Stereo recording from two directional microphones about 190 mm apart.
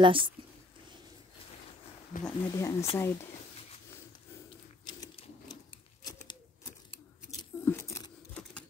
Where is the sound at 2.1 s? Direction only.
45° left (ahead or behind).